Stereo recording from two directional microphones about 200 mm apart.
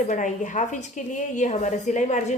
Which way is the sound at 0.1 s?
40° left (ahead or behind).